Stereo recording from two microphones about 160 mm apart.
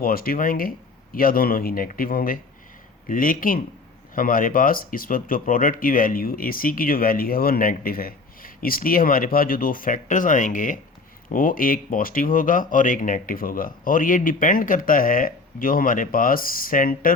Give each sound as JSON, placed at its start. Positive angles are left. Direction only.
{"t": 0.0, "sound": "speech", "side_deg": 65}